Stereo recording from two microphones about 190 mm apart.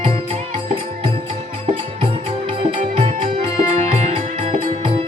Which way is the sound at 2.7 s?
40° right (ahead or behind).